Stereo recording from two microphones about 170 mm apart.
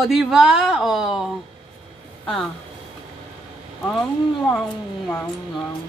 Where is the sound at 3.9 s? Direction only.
Centre (ahead or behind).